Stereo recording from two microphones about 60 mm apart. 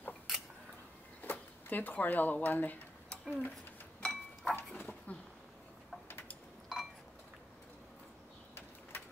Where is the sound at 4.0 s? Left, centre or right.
Centre.